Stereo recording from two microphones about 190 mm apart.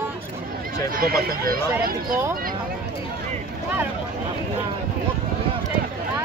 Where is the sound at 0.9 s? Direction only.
50° right (ahead or behind).